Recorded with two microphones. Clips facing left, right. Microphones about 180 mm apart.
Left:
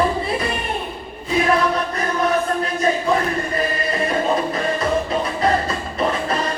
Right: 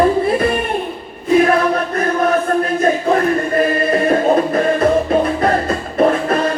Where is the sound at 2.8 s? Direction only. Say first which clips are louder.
Right 2 dB; 55° right (ahead or behind).